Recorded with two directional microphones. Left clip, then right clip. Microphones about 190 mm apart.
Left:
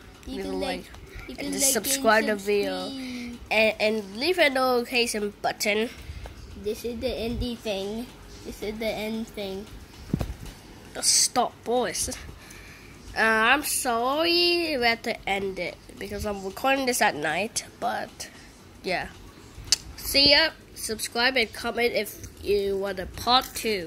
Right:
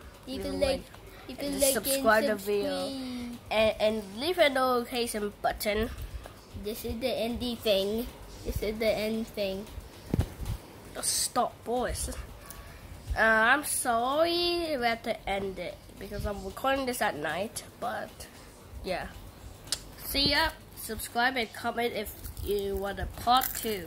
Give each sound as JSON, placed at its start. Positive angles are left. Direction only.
{"t": 0.3, "sound": "a woman's voice", "side_deg": -10}
{"t": 1.5, "sound": "a woman's voice", "side_deg": 15}
{"t": 6.6, "sound": "a woman's voice", "side_deg": -10}
{"t": 7.6, "sound": "speech", "side_deg": -30}
{"t": 8.5, "sound": "a woman's voice", "side_deg": -15}
{"t": 11.0, "sound": "a woman's voice", "side_deg": 10}
{"t": 19.7, "sound": "a sound", "side_deg": 15}
{"t": 21.1, "sound": "a woman's voice", "side_deg": 15}